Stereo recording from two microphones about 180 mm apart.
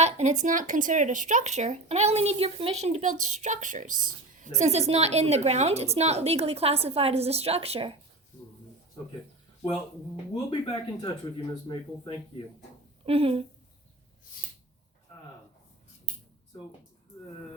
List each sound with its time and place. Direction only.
0.0 s speech: 40° right (ahead or behind)
10.3 s speech: 30° left (ahead or behind)
13.1 s speech: 30° right (ahead or behind)